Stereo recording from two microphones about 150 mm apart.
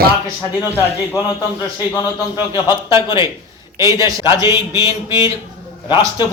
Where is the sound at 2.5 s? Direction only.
30° left (ahead or behind).